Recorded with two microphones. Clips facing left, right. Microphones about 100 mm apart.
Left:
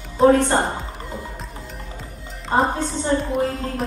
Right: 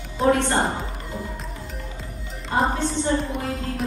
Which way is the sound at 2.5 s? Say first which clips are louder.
Left 3 dB; 35° left (ahead or behind).